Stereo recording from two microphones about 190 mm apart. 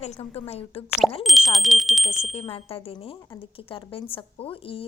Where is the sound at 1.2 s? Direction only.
Centre (ahead or behind).